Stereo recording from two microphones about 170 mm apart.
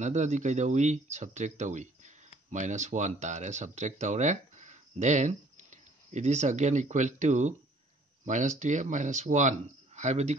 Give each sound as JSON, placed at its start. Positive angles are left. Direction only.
{"t": 0.0, "sound": "speech", "side_deg": -45}